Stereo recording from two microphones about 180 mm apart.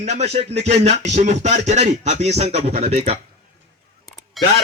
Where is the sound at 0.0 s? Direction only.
40° right (ahead or behind).